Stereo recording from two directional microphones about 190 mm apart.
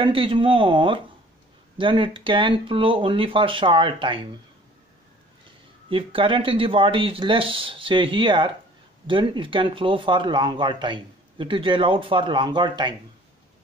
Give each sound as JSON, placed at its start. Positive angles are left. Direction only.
{"t": 0.0, "sound": "speech", "side_deg": -25}
{"t": 5.9, "sound": "speech", "side_deg": -25}